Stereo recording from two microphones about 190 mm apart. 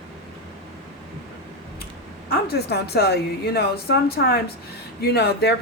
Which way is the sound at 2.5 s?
55° left (ahead or behind).